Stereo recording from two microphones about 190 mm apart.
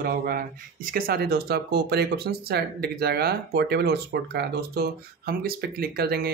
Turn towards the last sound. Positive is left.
turn(degrees=-55)  # may be behind; listen again after turning